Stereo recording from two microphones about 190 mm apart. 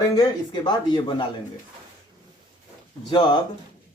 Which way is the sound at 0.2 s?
25° left (ahead or behind).